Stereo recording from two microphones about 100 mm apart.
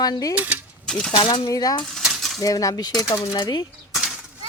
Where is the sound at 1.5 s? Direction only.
40° left (ahead or behind).